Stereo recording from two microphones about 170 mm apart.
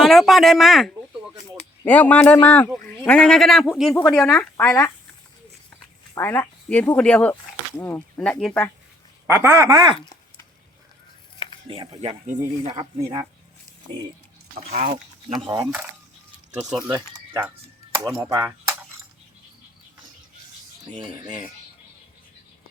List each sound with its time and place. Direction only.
0.0 s speech: centre (ahead or behind)
6.1 s speech: 15° left (ahead or behind)
9.2 s speech: 15° right (ahead or behind)
11.7 s music: 30° right (ahead or behind)
12.0 s speech: 40° right (ahead or behind)
15.4 s speech: 15° right (ahead or behind)
21.0 s music: 25° right (ahead or behind)